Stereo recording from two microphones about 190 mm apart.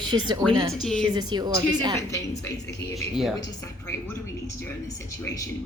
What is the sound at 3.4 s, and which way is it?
Speech, 15° left (ahead or behind).